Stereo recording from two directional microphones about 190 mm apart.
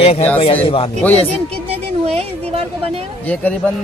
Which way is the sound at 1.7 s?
30° right (ahead or behind).